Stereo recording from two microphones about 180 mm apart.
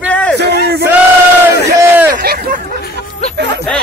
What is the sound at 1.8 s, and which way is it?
Speech, 10° right (ahead or behind).